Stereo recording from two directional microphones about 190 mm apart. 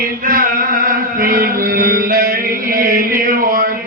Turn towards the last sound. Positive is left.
turn(degrees=-50)  # may be behind; listen again after turning